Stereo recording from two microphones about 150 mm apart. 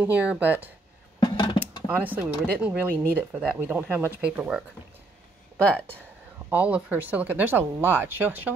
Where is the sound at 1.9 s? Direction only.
10° right (ahead or behind).